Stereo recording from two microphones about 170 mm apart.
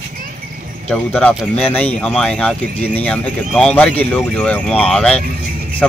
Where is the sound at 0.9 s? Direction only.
10° left (ahead or behind).